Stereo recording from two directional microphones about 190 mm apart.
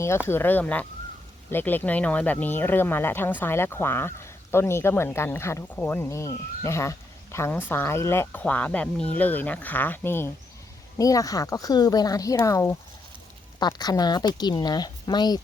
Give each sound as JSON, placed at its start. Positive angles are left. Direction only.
{"t": 0.3, "sound": "speech", "side_deg": 10}